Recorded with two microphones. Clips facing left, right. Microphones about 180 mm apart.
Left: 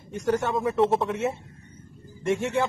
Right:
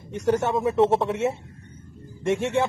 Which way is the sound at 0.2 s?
25° right (ahead or behind).